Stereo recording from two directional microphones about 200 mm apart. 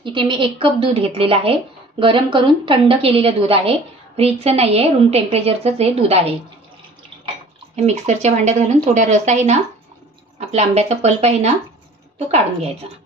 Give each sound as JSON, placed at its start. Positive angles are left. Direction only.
{"t": 0.0, "sound": "a woman's voice", "side_deg": -25}
{"t": 7.8, "sound": "a woman's voice", "side_deg": -35}